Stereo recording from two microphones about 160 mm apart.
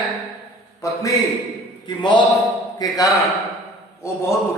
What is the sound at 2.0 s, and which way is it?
Speech, 30° left (ahead or behind).